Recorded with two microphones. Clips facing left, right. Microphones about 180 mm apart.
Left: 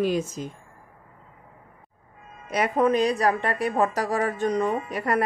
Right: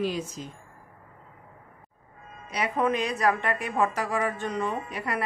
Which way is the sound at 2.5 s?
50° left (ahead or behind).